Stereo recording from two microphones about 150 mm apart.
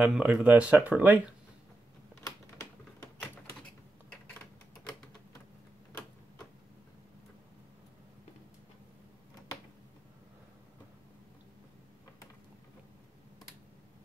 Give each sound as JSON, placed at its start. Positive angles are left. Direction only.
{"t": 0.0, "sound": "speech", "side_deg": -5}
{"t": 2.2, "sound": "typing", "side_deg": 20}